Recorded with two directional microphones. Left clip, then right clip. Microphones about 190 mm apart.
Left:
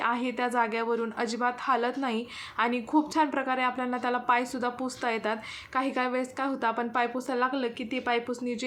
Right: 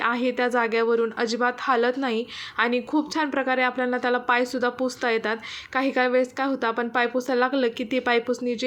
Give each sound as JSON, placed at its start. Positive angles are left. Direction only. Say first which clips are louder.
{"t": 0.0, "sound": "a woman's voice", "louder": "right 5 dB", "side_deg": -15}